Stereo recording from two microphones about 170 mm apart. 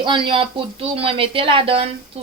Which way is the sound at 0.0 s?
30° right (ahead or behind).